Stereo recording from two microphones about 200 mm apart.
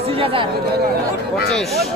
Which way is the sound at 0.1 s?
30° right (ahead or behind).